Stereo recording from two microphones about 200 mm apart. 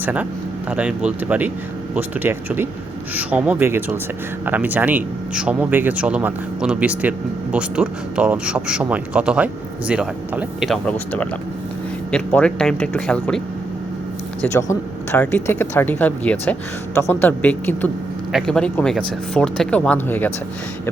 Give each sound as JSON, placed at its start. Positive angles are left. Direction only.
{"t": 0.0, "sound": "a man's voice", "side_deg": -5}
{"t": 12.1, "sound": "a man's voice", "side_deg": 5}
{"t": 14.4, "sound": "a man's voice", "side_deg": 10}